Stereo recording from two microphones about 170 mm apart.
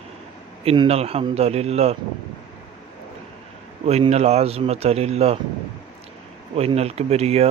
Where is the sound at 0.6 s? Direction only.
30° right (ahead or behind).